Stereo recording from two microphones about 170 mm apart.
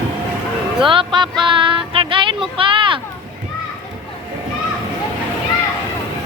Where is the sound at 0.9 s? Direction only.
30° right (ahead or behind).